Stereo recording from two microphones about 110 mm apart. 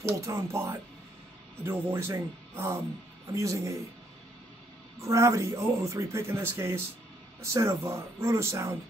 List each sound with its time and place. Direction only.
0.0 s speech: 25° right (ahead or behind)
5.0 s speech: 25° right (ahead or behind)